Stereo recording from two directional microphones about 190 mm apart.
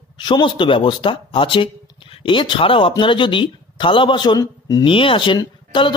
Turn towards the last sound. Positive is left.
turn(degrees=25)  # may be behind; listen again after turning